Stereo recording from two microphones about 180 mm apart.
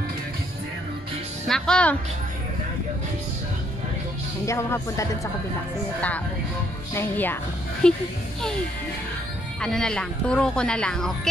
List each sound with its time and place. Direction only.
1.5 s speech: 5° left (ahead or behind)
4.5 s speech: 15° left (ahead or behind)
9.6 s speech: 5° left (ahead or behind)